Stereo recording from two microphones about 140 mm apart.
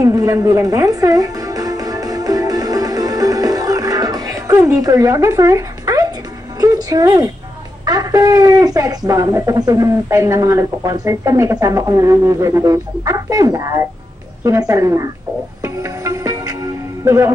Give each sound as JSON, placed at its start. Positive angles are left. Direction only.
{"t": 0.0, "sound": "music", "side_deg": -25}
{"t": 6.6, "sound": "a sound", "side_deg": -25}
{"t": 7.8, "sound": "speech", "side_deg": -25}
{"t": 15.6, "sound": "music", "side_deg": -20}